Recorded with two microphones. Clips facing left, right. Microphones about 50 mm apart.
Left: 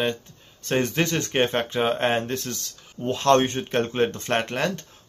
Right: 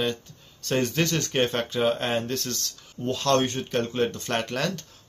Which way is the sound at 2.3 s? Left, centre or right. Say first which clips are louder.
Even; centre.